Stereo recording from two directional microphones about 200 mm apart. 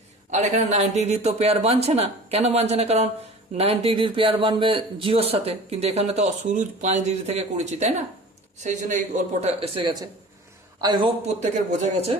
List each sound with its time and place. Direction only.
0.3 s a man's voice: 35° right (ahead or behind); by 11.1 s 20° right (ahead or behind)
11.3 s speech: 35° right (ahead or behind)